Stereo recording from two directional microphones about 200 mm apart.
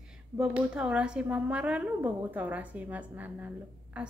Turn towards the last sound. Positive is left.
turn(degrees=-5)  # may be behind; listen again after turning